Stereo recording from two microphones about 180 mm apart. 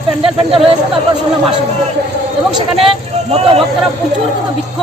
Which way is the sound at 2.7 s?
30° right (ahead or behind).